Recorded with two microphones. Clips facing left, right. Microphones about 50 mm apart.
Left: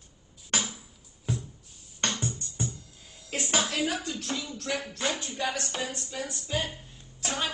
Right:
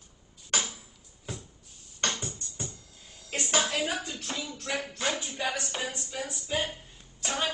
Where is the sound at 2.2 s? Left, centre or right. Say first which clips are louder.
Left 5 dB; left.